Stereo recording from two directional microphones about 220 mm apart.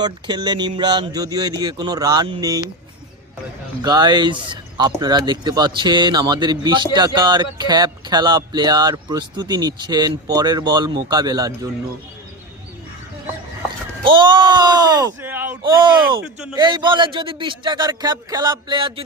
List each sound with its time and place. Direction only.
0.0 s speech: 20° right (ahead or behind)
3.8 s speech: 20° right (ahead or behind)
14.0 s speech: 20° right (ahead or behind)
15.8 s speech: 20° right (ahead or behind)
16.2 s speech: 5° right (ahead or behind)
16.6 s speech: 20° right (ahead or behind)